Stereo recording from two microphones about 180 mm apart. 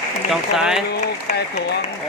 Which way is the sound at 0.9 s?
70° left (ahead or behind).